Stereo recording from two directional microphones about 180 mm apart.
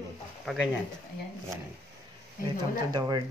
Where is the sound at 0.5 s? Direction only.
Centre (ahead or behind).